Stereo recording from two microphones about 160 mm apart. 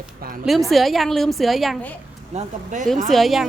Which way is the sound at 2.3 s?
50° right (ahead or behind).